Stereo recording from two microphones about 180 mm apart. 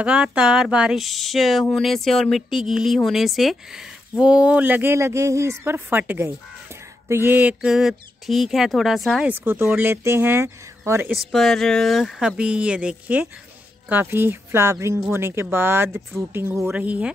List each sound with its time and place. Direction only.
0.0 s speech: 5° right (ahead or behind)